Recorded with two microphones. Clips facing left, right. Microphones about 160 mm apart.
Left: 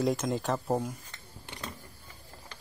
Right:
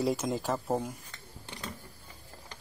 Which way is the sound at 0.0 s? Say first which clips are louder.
Left 1 dB; 5° right (ahead or behind).